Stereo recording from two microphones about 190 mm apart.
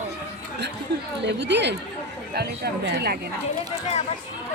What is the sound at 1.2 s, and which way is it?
Speech, 65° right (ahead or behind).